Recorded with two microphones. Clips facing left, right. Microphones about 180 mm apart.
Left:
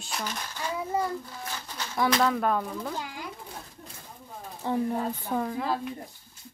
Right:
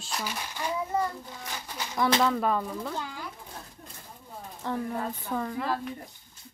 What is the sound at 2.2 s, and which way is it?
Speech, centre (ahead or behind).